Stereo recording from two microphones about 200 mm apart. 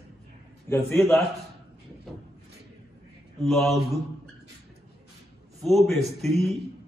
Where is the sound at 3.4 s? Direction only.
Centre (ahead or behind).